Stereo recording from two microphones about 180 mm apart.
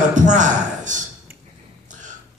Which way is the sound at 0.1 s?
45° right (ahead or behind).